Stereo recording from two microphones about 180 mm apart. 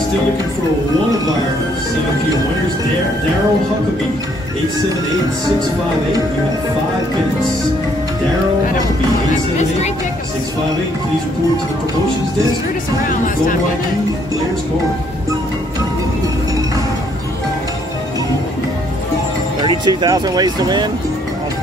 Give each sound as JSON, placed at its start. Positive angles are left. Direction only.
{"t": 9.3, "sound": "speech", "side_deg": 40}
{"t": 19.6, "sound": "speech", "side_deg": -25}